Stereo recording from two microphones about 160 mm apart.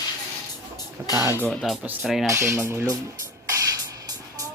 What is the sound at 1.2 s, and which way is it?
Speech, 15° left (ahead or behind).